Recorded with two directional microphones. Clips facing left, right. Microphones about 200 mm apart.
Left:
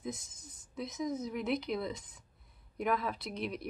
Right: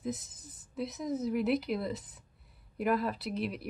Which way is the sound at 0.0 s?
5° right (ahead or behind).